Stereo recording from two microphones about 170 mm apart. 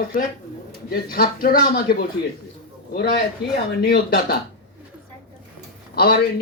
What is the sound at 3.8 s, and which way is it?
Speech, 70° left (ahead or behind).